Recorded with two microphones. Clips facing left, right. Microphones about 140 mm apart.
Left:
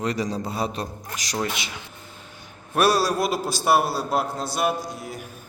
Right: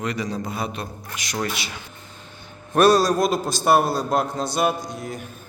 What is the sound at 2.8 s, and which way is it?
A man's voice, 10° left (ahead or behind).